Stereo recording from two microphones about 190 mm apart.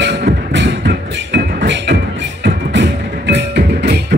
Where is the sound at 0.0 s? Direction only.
65° right (ahead or behind).